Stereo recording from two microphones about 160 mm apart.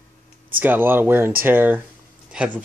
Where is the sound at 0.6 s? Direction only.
15° right (ahead or behind).